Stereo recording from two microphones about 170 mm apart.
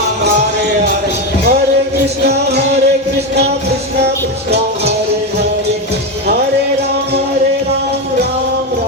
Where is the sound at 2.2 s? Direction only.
75° right (ahead or behind).